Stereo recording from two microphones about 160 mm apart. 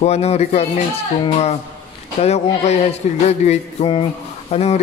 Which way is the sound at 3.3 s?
45° left (ahead or behind).